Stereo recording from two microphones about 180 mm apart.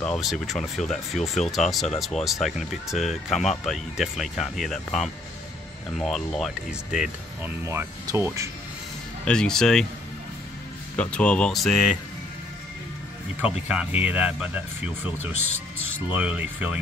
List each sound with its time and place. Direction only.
0.0 s speech: centre (ahead or behind)
7.6 s speech: 15° right (ahead or behind)
9.2 s speech: 5° left (ahead or behind)
11.0 s speech: 5° left (ahead or behind)
13.7 s speech: 5° right (ahead or behind)
16.1 s speech: 10° right (ahead or behind)